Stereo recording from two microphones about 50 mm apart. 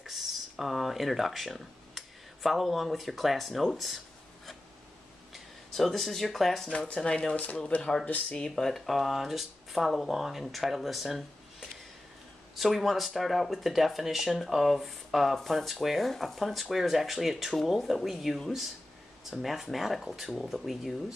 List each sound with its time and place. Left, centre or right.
0.0 s speech: centre
5.7 s speech: centre
6.9 s speech: left; by 11.2 s centre
12.5 s speech: centre